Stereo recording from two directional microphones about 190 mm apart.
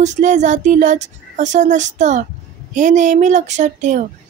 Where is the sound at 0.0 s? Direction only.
40° right (ahead or behind).